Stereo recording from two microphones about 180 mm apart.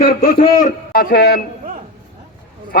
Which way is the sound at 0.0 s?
50° left (ahead or behind).